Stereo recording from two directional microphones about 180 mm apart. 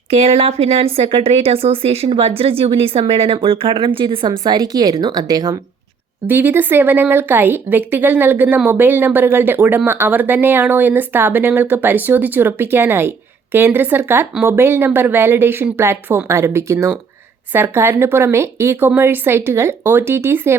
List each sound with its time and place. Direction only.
0.1 s a woman's voice: 35° right (ahead or behind); by 20.6 s 15° right (ahead or behind)